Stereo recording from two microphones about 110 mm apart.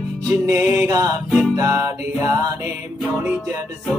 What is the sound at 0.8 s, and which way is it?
Music, 30° right (ahead or behind).